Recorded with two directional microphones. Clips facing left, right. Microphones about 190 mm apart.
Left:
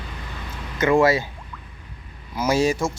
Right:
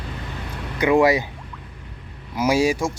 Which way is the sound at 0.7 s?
15° right (ahead or behind).